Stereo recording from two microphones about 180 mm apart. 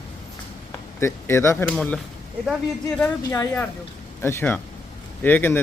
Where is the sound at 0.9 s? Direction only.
15° left (ahead or behind).